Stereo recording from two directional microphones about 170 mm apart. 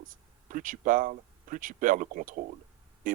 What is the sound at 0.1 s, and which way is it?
Speech, 55° right (ahead or behind).